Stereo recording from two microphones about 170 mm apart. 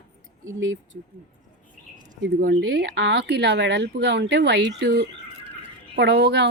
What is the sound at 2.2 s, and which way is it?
Speech, 70° right (ahead or behind).